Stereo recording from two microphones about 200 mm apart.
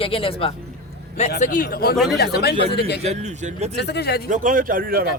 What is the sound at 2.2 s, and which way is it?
Speech, 55° left (ahead or behind).